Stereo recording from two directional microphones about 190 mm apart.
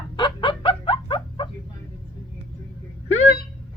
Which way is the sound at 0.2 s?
25° left (ahead or behind).